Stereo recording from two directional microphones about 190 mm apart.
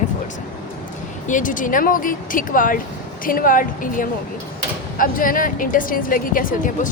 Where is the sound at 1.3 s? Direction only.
45° left (ahead or behind).